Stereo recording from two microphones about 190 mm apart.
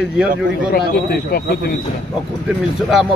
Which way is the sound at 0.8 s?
55° left (ahead or behind).